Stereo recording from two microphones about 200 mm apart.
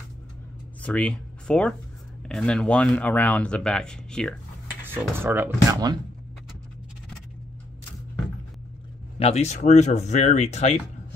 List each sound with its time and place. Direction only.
0.8 s speech: 5° left (ahead or behind)
4.8 s speech: 10° right (ahead or behind)
9.2 s speech: 35° left (ahead or behind)